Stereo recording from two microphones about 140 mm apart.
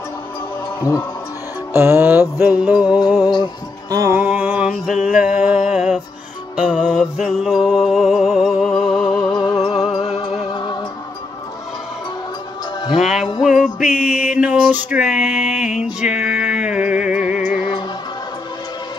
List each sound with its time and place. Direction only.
1.7 s music: 15° right (ahead or behind)
3.2 s music: 30° left (ahead or behind)
3.9 s music: 25° right (ahead or behind)
4.2 s a sound: 10° right (ahead or behind)
5.0 s music: 10° right (ahead or behind)
9.3 s music: 30° left (ahead or behind)
9.9 s music: 40° left (ahead or behind)
10.5 s music: 30° left (ahead or behind)
12.9 s music: 5° right (ahead or behind)
13.9 s a sound: 5° right (ahead or behind)
15.8 s music: 5° right (ahead or behind)